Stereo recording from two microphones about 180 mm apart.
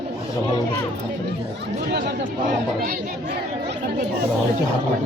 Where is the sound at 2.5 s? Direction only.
50° right (ahead or behind).